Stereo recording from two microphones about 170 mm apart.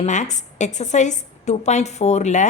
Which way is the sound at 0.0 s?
45° left (ahead or behind).